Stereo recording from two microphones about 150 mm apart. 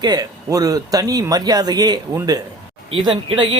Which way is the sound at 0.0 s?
25° right (ahead or behind).